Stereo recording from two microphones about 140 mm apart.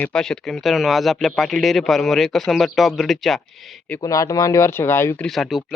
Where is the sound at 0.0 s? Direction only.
5° left (ahead or behind).